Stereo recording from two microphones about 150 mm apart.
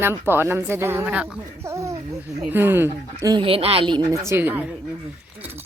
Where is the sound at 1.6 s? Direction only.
20° right (ahead or behind).